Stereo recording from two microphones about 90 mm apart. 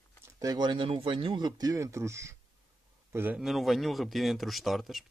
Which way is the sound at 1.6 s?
40° right (ahead or behind).